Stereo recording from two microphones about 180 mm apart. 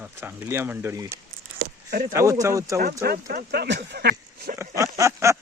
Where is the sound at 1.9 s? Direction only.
50° right (ahead or behind).